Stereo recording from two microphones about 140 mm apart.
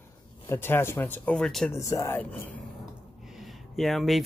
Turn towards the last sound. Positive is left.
turn(degrees=0)  # may be behind; listen again after turning